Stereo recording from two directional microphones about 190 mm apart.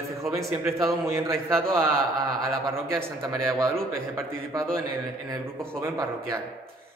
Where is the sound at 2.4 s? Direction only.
15° right (ahead or behind).